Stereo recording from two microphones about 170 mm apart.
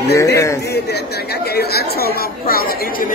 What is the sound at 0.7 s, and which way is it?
Speech, 75° left (ahead or behind).